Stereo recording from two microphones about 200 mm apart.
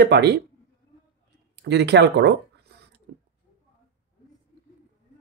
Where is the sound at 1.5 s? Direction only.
60° right (ahead or behind).